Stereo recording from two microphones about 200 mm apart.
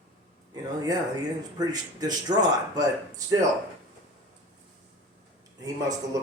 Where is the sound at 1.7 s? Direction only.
20° right (ahead or behind).